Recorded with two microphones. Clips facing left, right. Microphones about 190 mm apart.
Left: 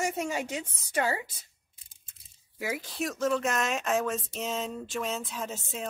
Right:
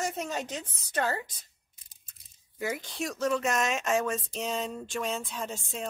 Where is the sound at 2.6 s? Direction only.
5° left (ahead or behind).